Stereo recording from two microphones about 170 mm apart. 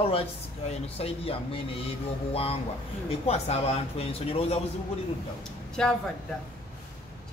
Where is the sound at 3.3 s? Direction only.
40° left (ahead or behind).